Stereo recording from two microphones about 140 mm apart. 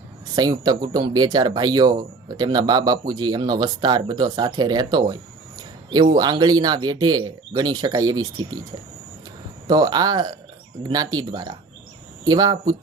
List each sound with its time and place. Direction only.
0.3 s speech: 30° right (ahead or behind)
5.5 s a sound: 30° right (ahead or behind)
6.1 s speech: 30° right (ahead or behind)
9.6 s speech: 30° right (ahead or behind)